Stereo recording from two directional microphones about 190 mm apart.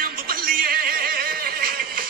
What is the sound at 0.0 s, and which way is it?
Music, 50° right (ahead or behind).